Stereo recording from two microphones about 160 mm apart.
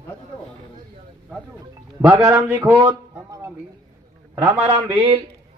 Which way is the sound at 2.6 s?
25° right (ahead or behind).